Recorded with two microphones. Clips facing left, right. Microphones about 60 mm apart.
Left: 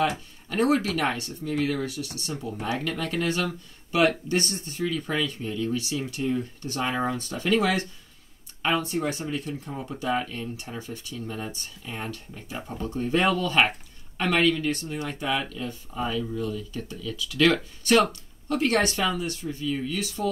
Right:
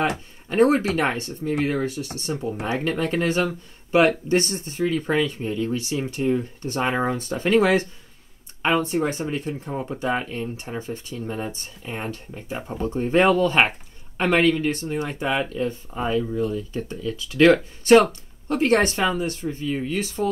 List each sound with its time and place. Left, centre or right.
0.5 s speech: right